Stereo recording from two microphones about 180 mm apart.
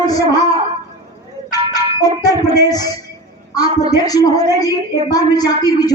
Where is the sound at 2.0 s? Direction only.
20° left (ahead or behind).